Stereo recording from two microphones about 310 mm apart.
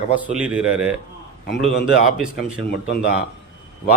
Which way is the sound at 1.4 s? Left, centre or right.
Left.